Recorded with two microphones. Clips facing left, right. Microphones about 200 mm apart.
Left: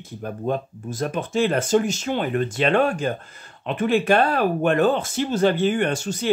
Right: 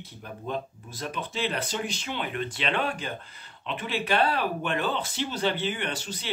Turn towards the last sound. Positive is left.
turn(degrees=45)  # may be behind; listen again after turning